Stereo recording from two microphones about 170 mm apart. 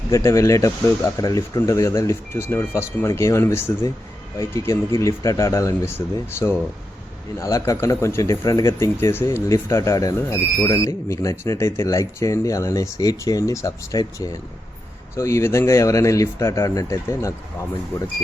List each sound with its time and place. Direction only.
0.1 s speech: 15° left (ahead or behind)
7.3 s speech: 20° left (ahead or behind)